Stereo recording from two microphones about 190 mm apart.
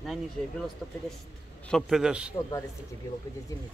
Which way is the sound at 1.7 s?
Centre (ahead or behind).